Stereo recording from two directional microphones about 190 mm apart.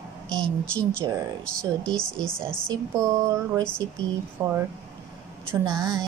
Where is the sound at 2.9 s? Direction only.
20° right (ahead or behind).